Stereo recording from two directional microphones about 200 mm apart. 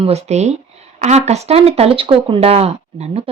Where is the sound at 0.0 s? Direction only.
30° right (ahead or behind).